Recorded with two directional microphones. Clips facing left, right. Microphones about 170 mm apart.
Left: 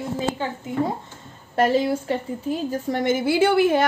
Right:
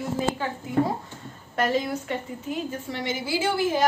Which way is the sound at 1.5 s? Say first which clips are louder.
Left 5 dB; 35° left (ahead or behind).